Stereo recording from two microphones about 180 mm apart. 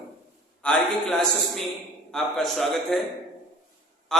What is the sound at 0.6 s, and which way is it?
A man's voice, 5° left (ahead or behind).